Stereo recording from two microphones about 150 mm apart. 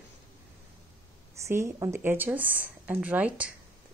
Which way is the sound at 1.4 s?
20° right (ahead or behind).